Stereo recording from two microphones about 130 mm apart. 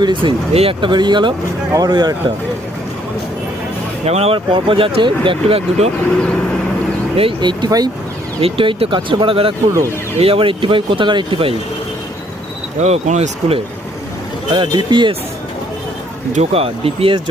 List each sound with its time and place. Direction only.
0.0 s speech: 40° right (ahead or behind)
4.0 s speech: 50° right (ahead or behind)
7.2 s speech: 40° right (ahead or behind)
8.4 s speech: 45° right (ahead or behind)
12.8 s speech: 55° right (ahead or behind)
14.5 s speech: 35° right (ahead or behind)
16.3 s speech: 55° right (ahead or behind)